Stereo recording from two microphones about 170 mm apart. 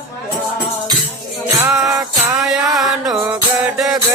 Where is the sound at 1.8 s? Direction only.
20° right (ahead or behind).